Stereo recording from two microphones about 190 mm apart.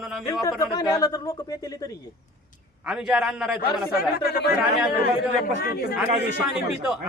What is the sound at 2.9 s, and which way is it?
A man's voice, 5° right (ahead or behind).